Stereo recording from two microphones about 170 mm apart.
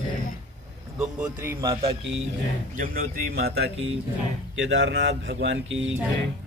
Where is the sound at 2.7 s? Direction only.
60° right (ahead or behind).